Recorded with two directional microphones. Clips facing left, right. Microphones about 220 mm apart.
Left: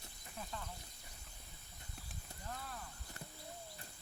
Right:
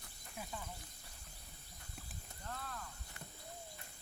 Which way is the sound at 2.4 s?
10° left (ahead or behind).